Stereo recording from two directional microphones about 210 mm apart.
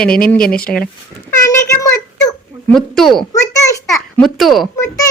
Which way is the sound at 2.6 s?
Centre (ahead or behind).